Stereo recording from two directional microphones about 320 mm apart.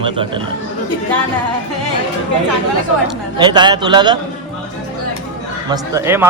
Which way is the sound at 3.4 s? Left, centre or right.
Centre.